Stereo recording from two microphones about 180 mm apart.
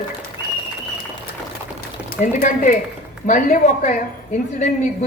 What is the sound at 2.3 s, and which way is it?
A woman's voice, 45° left (ahead or behind).